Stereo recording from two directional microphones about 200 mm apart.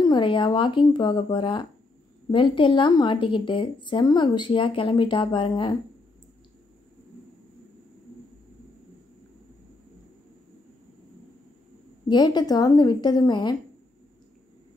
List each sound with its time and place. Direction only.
0.0 s a woman's voice: 20° left (ahead or behind)
12.1 s a woman's voice: 20° left (ahead or behind)